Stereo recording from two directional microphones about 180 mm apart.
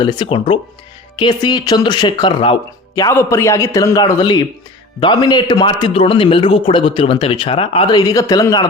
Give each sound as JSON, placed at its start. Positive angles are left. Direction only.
{"t": 0.0, "sound": "speech", "side_deg": 25}